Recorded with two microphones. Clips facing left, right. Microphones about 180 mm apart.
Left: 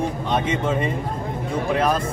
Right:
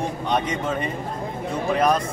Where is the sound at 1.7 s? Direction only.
5° left (ahead or behind).